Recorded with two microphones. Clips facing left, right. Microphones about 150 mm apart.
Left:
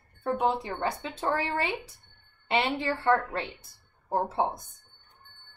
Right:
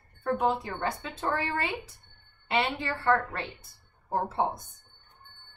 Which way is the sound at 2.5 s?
15° left (ahead or behind).